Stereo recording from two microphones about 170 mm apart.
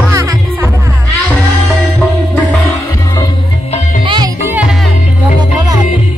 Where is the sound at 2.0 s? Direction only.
10° left (ahead or behind).